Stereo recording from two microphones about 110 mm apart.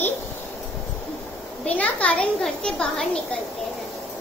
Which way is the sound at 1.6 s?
10° left (ahead or behind).